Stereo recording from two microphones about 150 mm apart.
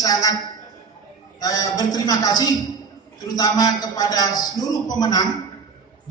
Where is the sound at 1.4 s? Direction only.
25° left (ahead or behind).